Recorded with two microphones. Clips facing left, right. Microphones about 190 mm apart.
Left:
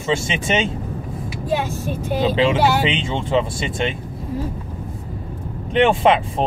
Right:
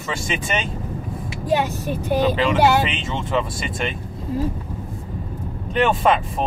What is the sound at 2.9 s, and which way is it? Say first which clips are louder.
Speech: left 4 dB; 30° left (ahead or behind).